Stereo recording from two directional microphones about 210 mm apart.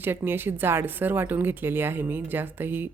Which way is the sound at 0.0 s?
10° right (ahead or behind).